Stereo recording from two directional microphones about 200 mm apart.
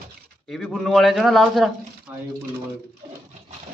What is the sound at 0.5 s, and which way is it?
A man's voice, centre (ahead or behind).